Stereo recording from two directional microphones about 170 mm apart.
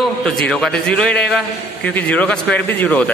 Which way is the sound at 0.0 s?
5° left (ahead or behind).